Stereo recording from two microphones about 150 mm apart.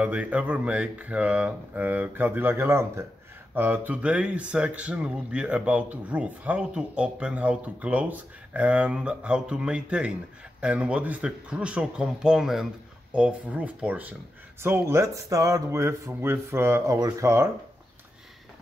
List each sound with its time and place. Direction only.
0.0 s speech: 10° right (ahead or behind)